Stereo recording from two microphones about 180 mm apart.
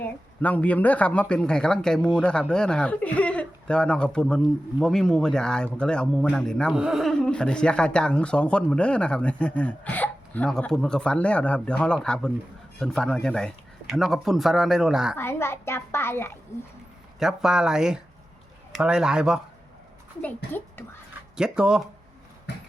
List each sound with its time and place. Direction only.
0.0 s a woman's voice: 10° left (ahead or behind)
15.1 s a woman's voice: 15° left (ahead or behind)
17.2 s speech: centre (ahead or behind)
20.2 s a woman's voice: 10° left (ahead or behind)
21.3 s speech: 5° right (ahead or behind)
22.5 s a sound: 70° left (ahead or behind)